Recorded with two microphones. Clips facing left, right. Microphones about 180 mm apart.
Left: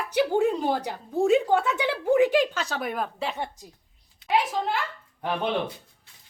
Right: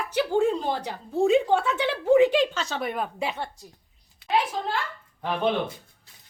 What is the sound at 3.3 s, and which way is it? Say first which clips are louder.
Speech: left 1 dB; 15° left (ahead or behind).